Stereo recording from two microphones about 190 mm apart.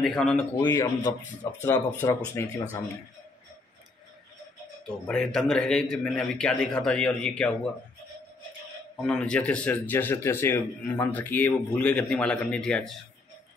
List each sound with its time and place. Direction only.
0.0 s a man's voice: 5° left (ahead or behind)
0.7 s a man's voice: 20° left (ahead or behind)
5.0 s a man's voice: centre (ahead or behind)
9.0 s a man's voice: 5° left (ahead or behind)